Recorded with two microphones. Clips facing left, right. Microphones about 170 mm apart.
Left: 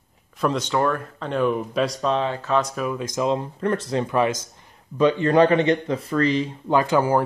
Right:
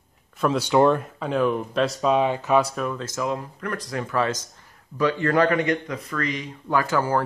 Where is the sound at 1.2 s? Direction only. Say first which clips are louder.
Left 2 dB; centre (ahead or behind).